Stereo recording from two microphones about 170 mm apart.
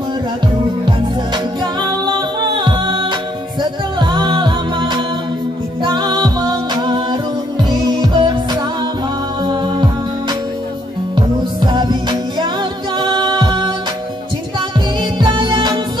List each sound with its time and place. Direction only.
0.8 s music: 25° right (ahead or behind)
9.4 s music: 25° right (ahead or behind)
11.1 s music: 25° right (ahead or behind)
15.1 s music: 25° right (ahead or behind)